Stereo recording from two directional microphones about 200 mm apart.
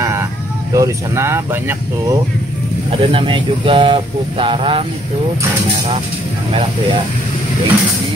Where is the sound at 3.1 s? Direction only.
25° right (ahead or behind).